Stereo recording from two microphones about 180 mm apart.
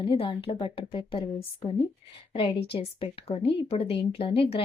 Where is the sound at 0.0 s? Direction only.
30° left (ahead or behind).